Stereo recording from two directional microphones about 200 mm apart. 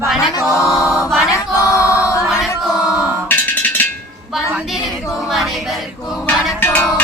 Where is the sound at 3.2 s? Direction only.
10° left (ahead or behind).